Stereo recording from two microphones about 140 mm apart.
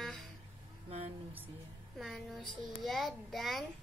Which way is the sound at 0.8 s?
50° right (ahead or behind).